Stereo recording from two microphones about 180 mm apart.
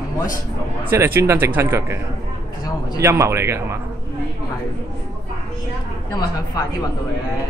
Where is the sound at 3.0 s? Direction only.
15° right (ahead or behind).